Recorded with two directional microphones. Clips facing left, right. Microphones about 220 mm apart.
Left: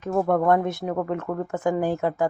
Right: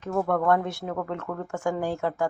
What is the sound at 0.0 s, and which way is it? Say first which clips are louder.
Speech: left 3 dB; 20° left (ahead or behind).